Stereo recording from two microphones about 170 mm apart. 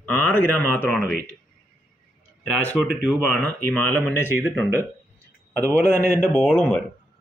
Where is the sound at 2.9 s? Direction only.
Centre (ahead or behind).